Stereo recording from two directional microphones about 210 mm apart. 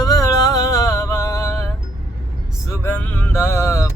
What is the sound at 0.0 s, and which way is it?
Music, 15° left (ahead or behind).